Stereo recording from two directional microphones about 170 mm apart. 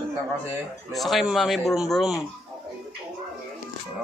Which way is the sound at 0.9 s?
Centre (ahead or behind).